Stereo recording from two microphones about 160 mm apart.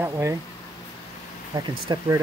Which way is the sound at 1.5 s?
30° right (ahead or behind).